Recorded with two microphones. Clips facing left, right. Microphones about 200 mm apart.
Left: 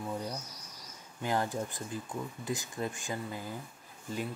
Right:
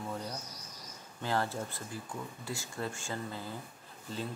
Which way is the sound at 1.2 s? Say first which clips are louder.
Left 1 dB; 15° left (ahead or behind).